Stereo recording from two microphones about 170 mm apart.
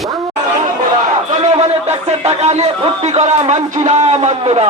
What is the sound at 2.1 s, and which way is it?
Speech, 40° right (ahead or behind).